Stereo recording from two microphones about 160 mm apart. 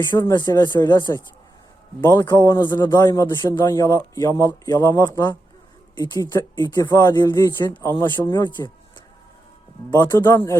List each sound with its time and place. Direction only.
0.1 s a man's voice: 20° left (ahead or behind)
6.7 s a man's voice: 25° left (ahead or behind)
9.9 s a man's voice: 25° left (ahead or behind)